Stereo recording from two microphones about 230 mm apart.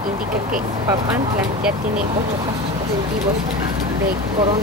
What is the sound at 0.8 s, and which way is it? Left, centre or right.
Speech, centre.